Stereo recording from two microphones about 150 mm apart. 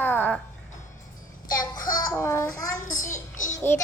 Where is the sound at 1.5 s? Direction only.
25° left (ahead or behind).